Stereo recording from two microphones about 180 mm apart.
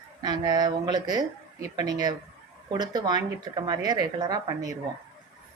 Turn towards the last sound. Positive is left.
turn(degrees=-20)  # may be behind; listen again after turning